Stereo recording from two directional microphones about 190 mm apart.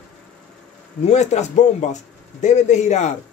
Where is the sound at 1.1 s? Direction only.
35° left (ahead or behind).